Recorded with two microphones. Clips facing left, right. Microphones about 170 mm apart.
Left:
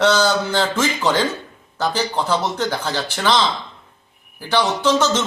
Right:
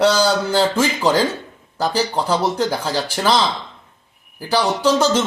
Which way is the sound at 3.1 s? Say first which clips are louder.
Right 1 dB; 10° right (ahead or behind).